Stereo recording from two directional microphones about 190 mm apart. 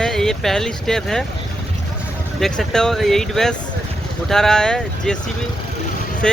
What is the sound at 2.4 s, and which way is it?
Speech, centre (ahead or behind).